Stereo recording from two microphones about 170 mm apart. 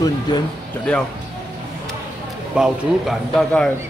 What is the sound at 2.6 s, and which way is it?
A man's voice, centre (ahead or behind).